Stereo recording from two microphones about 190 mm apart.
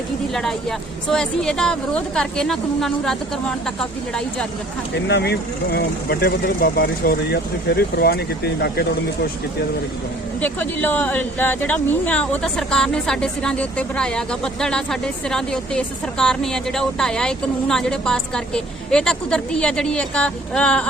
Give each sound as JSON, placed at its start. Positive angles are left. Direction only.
{"t": 1.0, "sound": "speech", "side_deg": 5}
{"t": 5.0, "sound": "speech", "side_deg": 60}
{"t": 10.4, "sound": "speech", "side_deg": 10}